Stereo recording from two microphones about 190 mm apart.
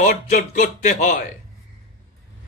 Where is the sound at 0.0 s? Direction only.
40° left (ahead or behind).